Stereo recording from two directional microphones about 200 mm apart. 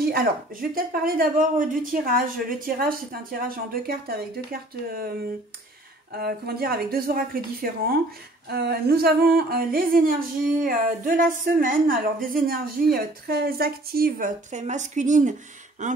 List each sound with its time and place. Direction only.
0.0 s a woman's voice: 45° right (ahead or behind)
6.1 s a woman's voice: 50° right (ahead or behind)